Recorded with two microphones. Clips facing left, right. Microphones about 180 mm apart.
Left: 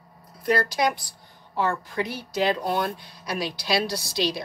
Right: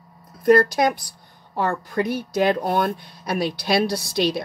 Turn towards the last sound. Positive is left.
turn(degrees=-55)  # may be behind; listen again after turning